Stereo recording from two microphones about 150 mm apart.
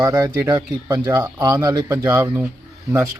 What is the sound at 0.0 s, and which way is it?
Speech, 15° right (ahead or behind).